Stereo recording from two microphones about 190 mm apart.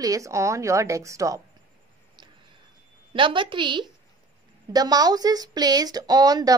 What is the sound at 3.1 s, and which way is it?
A woman's voice, 25° right (ahead or behind).